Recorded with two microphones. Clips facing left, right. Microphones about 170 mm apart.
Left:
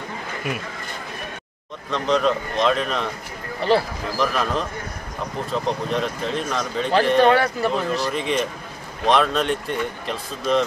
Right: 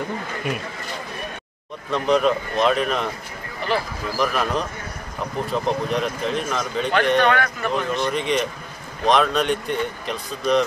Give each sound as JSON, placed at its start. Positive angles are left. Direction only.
{"t": 1.9, "sound": "speech", "side_deg": -10}
{"t": 3.7, "sound": "a man's voice", "side_deg": 30}
{"t": 4.2, "sound": "speech", "side_deg": -5}
{"t": 7.2, "sound": "a man's voice", "side_deg": 30}
{"t": 8.1, "sound": "speech", "side_deg": 0}